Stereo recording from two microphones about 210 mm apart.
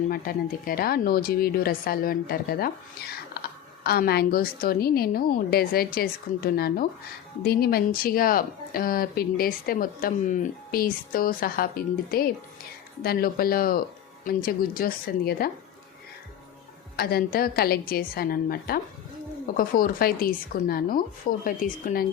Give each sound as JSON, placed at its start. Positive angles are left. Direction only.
{"t": 0.1, "sound": "speech", "side_deg": 45}
{"t": 17.0, "sound": "speech", "side_deg": 45}